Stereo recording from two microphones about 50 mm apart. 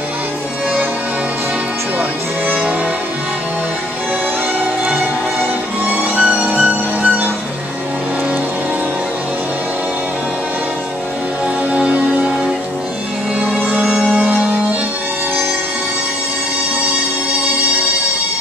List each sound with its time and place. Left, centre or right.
2.4 s music: right
6.1 s music: right
11.7 s music: right
13.6 s music: right
14.1 s music: centre